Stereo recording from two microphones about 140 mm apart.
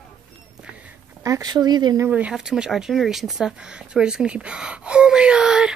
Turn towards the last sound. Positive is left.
turn(degrees=-5)  # may be behind; listen again after turning